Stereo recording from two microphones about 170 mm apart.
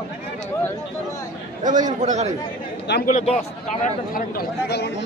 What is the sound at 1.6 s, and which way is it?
Speech, 50° right (ahead or behind).